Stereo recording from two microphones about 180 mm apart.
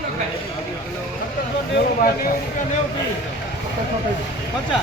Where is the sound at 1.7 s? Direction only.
55° left (ahead or behind).